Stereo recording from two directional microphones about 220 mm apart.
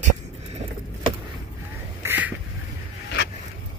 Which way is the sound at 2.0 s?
5° right (ahead or behind).